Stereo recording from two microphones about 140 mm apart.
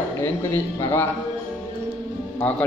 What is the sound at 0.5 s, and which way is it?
Speech, 15° left (ahead or behind).